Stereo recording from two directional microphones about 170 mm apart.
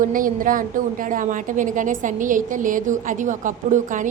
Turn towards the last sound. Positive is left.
turn(degrees=-50)  # may be behind; listen again after turning